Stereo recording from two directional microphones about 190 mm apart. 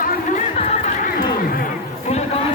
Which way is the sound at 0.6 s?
35° left (ahead or behind).